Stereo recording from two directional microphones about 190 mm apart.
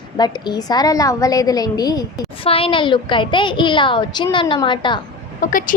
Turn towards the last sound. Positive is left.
turn(degrees=45)  # may be behind; listen again after turning